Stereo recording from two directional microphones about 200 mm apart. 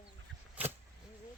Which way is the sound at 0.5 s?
10° right (ahead or behind).